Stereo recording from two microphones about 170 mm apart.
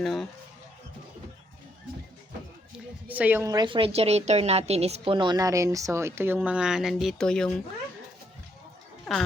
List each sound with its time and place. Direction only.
0.0 s speech: centre (ahead or behind)
2.7 s a woman's voice: 10° right (ahead or behind)
9.1 s speech: centre (ahead or behind)